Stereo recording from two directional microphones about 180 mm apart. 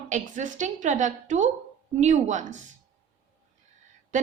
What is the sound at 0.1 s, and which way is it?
A woman's voice, 45° right (ahead or behind).